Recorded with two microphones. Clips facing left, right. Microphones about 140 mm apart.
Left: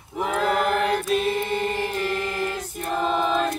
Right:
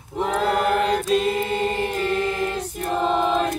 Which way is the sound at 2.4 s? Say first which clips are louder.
Right 3 dB; 15° right (ahead or behind).